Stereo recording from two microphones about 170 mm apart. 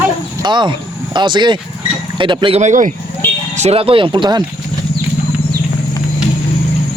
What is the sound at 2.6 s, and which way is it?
Speech, 45° right (ahead or behind).